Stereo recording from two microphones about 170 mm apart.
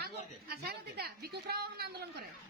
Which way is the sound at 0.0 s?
65° right (ahead or behind).